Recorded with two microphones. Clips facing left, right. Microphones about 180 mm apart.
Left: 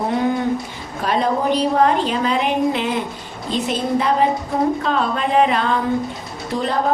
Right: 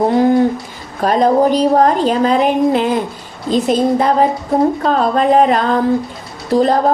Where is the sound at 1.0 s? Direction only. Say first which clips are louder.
Right 7 dB; 40° right (ahead or behind).